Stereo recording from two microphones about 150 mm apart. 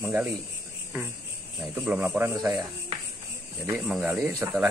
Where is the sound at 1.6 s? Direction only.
5° right (ahead or behind).